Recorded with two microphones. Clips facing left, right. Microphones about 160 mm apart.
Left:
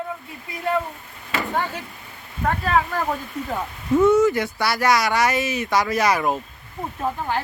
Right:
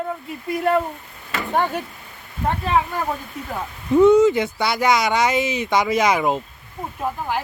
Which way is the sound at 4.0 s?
15° right (ahead or behind).